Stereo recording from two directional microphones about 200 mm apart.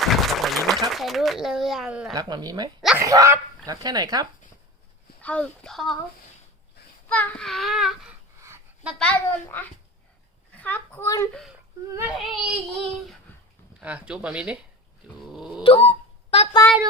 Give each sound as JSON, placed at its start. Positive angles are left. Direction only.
{"t": 0.0, "sound": "a sound", "side_deg": 0}
{"t": 2.1, "sound": "speech", "side_deg": -20}
{"t": 5.2, "sound": "speech", "side_deg": 5}
{"t": 7.1, "sound": "speech", "side_deg": 10}
{"t": 8.4, "sound": "a woman's voice", "side_deg": -15}
{"t": 11.3, "sound": "speech", "side_deg": -5}
{"t": 15.3, "sound": "dog", "side_deg": 0}
{"t": 15.6, "sound": "a sound", "side_deg": 30}